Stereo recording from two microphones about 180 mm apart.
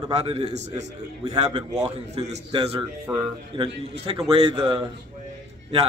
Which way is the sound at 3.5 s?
25° right (ahead or behind).